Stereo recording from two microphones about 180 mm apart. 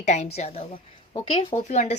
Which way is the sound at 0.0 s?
40° left (ahead or behind).